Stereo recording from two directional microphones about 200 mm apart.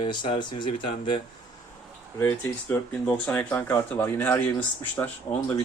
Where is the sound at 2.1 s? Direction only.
10° left (ahead or behind).